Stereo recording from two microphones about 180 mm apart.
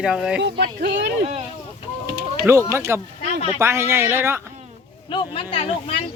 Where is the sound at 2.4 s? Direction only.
15° right (ahead or behind).